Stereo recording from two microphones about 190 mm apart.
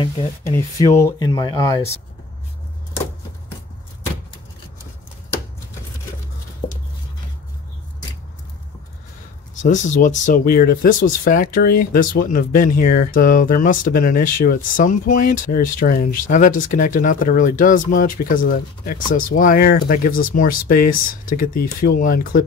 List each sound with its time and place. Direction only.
0.0 s speech: 20° left (ahead or behind)
6.6 s a sound: 35° left (ahead or behind)
9.6 s speech: 40° left (ahead or behind)